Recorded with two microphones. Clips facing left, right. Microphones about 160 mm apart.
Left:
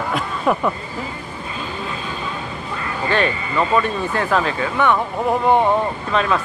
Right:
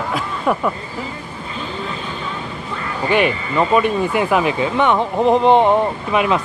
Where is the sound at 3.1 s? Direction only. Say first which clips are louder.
Right 3 dB; 15° right (ahead or behind).